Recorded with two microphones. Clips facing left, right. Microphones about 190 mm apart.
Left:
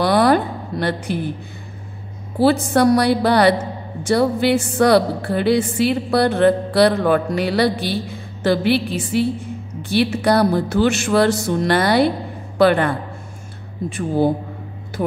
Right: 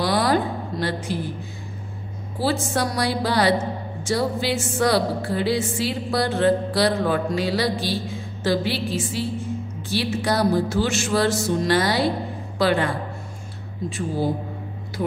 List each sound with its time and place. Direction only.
0.0 s a sound: 60° left (ahead or behind)
2.3 s a woman's voice: 60° left (ahead or behind)
13.9 s a woman's voice: 55° left (ahead or behind)